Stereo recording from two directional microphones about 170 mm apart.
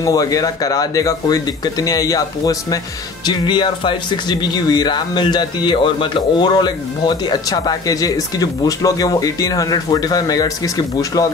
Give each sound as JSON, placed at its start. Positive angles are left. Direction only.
{"t": 0.0, "sound": "speech", "side_deg": 20}